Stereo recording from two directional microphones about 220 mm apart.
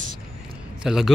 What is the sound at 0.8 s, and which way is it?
Speech, centre (ahead or behind).